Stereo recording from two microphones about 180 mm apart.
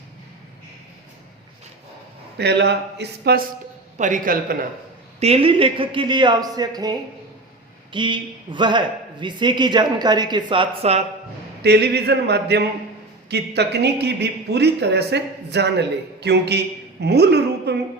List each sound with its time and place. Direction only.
2.4 s speech: 70° right (ahead or behind)
3.9 s a man's voice: 45° right (ahead or behind)
5.2 s speech: 35° right (ahead or behind)
7.9 s speech: 25° right (ahead or behind)
11.6 s speech: 65° right (ahead or behind)